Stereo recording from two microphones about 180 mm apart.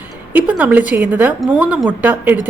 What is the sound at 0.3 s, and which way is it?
A woman's voice, 10° right (ahead or behind).